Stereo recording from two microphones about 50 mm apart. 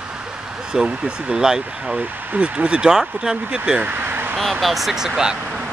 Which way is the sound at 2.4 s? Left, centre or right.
Right.